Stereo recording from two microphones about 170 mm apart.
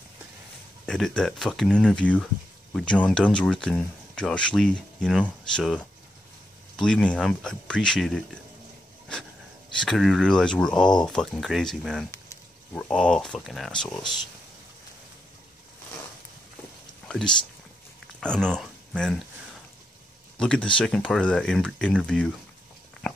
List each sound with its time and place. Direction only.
0.8 s speech: 5° left (ahead or behind)
9.8 s speech: centre (ahead or behind)
17.1 s speech: 5° left (ahead or behind)
20.3 s speech: 5° left (ahead or behind)